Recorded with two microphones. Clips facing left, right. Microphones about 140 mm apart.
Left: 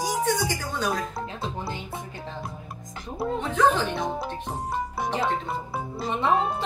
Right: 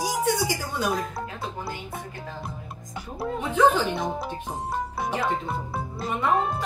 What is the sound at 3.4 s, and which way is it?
Speech, 5° right (ahead or behind).